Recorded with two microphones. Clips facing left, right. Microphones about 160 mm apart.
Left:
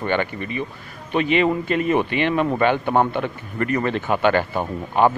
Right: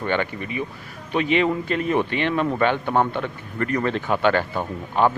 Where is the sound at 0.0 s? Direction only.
Centre (ahead or behind).